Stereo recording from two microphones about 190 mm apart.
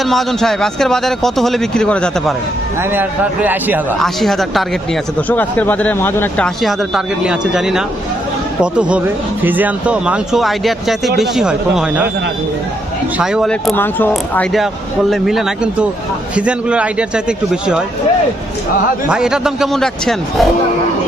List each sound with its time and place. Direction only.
0.0 s speech: centre (ahead or behind)
2.9 s a man's voice: 10° right (ahead or behind)
4.0 s a man's voice: centre (ahead or behind)
13.1 s speech: 5° right (ahead or behind)
13.7 s speech: 10° left (ahead or behind)
14.1 s speech: centre (ahead or behind)
19.0 s speech: 5° right (ahead or behind)